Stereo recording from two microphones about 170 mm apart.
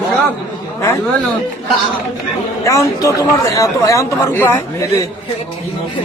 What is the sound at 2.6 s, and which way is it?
Speech, 20° left (ahead or behind).